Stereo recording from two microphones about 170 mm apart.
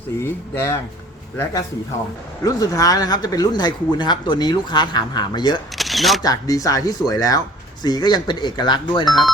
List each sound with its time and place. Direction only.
0.2 s speech: 15° left (ahead or behind)
2.4 s speech: 20° left (ahead or behind)
5.7 s single-lens reflex camera: centre (ahead or behind)
6.2 s speech: 20° left (ahead or behind)